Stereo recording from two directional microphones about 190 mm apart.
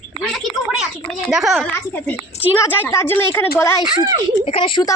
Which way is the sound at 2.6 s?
10° left (ahead or behind).